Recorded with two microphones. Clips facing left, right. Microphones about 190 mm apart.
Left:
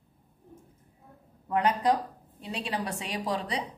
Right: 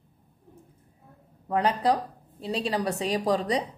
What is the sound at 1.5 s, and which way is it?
A woman's voice, 35° right (ahead or behind).